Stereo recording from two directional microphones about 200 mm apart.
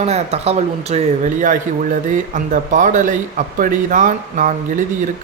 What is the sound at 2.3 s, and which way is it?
Speech, 40° right (ahead or behind).